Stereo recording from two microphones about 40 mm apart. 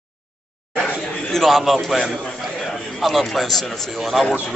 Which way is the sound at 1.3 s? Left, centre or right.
Centre.